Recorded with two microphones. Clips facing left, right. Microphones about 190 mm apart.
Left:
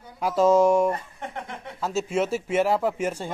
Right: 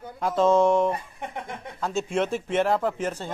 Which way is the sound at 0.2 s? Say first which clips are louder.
Left 1 dB; 10° left (ahead or behind).